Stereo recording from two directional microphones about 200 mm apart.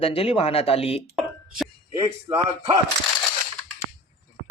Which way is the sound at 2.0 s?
20° right (ahead or behind).